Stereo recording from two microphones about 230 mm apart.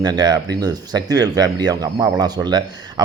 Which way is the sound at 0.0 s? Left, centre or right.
Centre.